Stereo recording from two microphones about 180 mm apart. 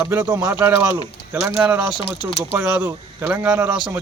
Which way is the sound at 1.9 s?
25° left (ahead or behind).